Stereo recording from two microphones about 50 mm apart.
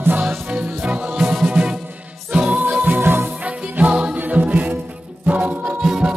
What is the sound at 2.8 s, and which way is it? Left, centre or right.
Music, right.